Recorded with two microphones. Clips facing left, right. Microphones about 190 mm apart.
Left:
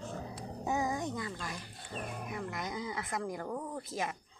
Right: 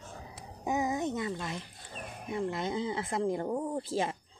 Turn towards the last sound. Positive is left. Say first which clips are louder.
# right 6 dB
turn(degrees=-30)  # may be behind; listen again after turning